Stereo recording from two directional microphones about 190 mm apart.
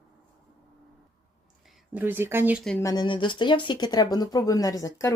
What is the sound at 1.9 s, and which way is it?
Speech, 10° right (ahead or behind).